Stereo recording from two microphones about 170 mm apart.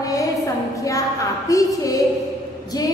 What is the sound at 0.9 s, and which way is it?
A woman's voice, 20° left (ahead or behind).